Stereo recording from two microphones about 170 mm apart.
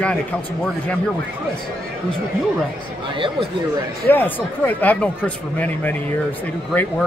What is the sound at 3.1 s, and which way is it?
Speech, 30° right (ahead or behind).